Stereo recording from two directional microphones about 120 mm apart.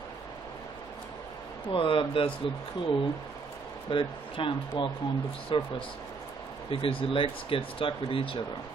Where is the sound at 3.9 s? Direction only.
45° left (ahead or behind).